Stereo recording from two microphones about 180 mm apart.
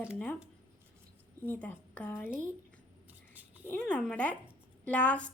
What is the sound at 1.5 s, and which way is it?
Speech, 10° left (ahead or behind).